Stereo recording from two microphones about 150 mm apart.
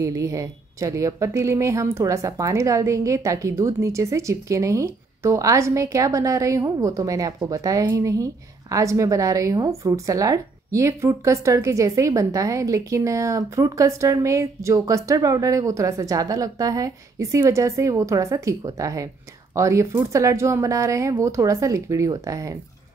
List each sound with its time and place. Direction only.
0.0 s a woman's voice: 20° right (ahead or behind)